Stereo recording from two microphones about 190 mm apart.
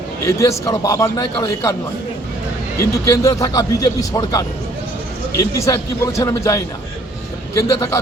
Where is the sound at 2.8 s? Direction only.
15° left (ahead or behind).